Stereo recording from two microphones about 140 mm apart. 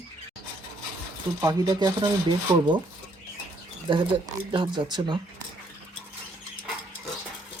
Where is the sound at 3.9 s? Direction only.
35° right (ahead or behind).